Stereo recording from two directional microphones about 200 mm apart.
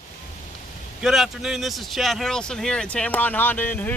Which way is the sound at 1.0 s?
Centre (ahead or behind).